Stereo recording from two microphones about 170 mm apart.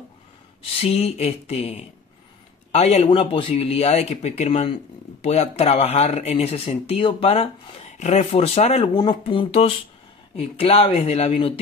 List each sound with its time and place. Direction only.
0.8 s speech: 40° left (ahead or behind)
8.9 s speech: 25° left (ahead or behind)